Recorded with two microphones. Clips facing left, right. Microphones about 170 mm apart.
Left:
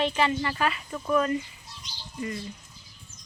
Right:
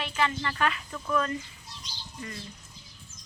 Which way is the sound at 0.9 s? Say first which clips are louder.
Left 4 dB; 20° left (ahead or behind).